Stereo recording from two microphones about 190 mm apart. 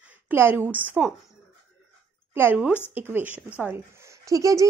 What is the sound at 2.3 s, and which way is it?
A woman's voice, 10° right (ahead or behind).